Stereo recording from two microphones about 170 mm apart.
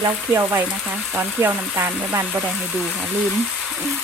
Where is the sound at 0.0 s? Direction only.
15° right (ahead or behind).